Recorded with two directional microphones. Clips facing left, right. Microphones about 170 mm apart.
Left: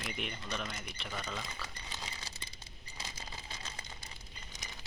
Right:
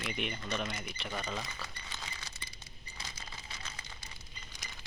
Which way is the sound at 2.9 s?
35° left (ahead or behind).